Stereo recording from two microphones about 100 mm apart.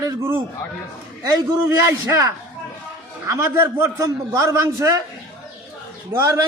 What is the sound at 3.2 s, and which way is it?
A man's voice, 25° right (ahead or behind).